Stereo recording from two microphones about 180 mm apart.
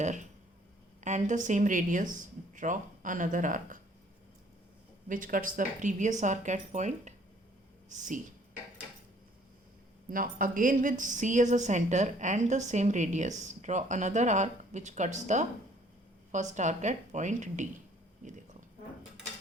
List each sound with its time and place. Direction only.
1.0 s a woman's voice: 40° right (ahead or behind)
5.0 s a woman's voice: 50° right (ahead or behind)
10.1 s a woman's voice: 50° right (ahead or behind)